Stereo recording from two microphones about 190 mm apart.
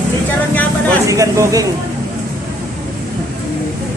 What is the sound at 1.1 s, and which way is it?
Speech, 15° right (ahead or behind).